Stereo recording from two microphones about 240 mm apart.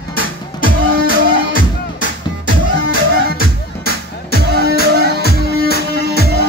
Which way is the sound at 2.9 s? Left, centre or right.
Left.